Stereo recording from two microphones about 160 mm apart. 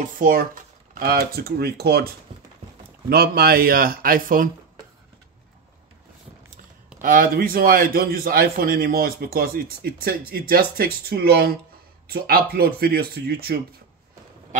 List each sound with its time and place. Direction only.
0.2 s a man's voice: 60° right (ahead or behind)
7.0 s a man's voice: 60° right (ahead or behind)